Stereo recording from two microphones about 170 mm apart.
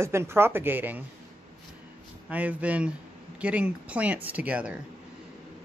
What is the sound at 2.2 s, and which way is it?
Speech, 10° right (ahead or behind).